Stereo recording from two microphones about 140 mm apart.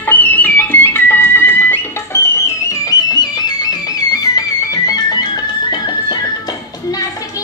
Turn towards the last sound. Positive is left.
turn(degrees=30)  # may be behind; listen again after turning